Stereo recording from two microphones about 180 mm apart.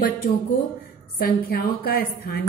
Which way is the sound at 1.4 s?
55° left (ahead or behind).